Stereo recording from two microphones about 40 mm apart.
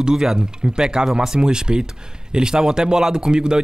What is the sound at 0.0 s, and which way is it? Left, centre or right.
Speech, centre.